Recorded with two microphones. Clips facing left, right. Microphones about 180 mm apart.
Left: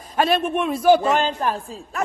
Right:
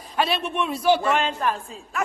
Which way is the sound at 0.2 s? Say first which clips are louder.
Left 4 dB; 50° left (ahead or behind).